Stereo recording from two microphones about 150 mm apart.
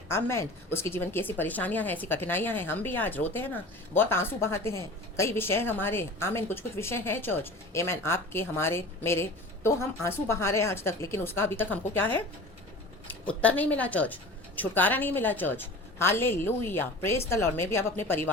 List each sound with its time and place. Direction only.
0.1 s a woman's voice: 15° left (ahead or behind)
13.4 s a woman's voice: 10° left (ahead or behind)